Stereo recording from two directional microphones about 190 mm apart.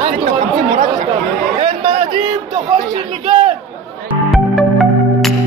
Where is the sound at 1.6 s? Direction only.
30° right (ahead or behind).